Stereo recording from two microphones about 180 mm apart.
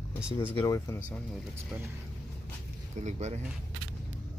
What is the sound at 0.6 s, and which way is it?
Speech, 15° left (ahead or behind).